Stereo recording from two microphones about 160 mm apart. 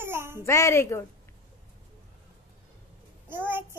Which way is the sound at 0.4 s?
20° left (ahead or behind).